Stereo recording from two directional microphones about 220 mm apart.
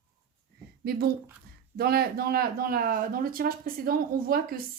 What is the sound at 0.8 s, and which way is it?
Speech, 45° right (ahead or behind).